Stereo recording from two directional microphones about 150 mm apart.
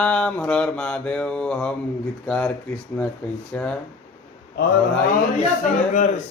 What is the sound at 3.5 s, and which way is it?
Mantra, 5° left (ahead or behind).